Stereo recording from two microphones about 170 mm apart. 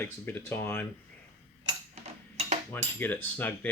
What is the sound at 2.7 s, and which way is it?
Speech, 10° left (ahead or behind).